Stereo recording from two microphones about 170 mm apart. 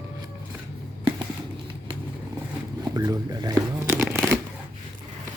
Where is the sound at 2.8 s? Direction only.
20° right (ahead or behind).